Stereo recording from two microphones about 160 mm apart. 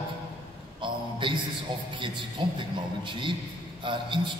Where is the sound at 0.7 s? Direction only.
30° right (ahead or behind).